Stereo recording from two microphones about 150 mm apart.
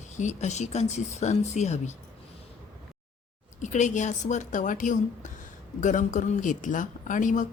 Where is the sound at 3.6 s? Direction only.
55° left (ahead or behind).